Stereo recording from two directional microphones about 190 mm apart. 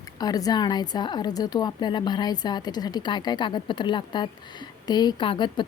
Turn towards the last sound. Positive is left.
turn(degrees=25)  # may be behind; listen again after turning